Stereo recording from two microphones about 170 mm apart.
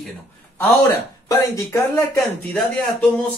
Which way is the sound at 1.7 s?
15° left (ahead or behind).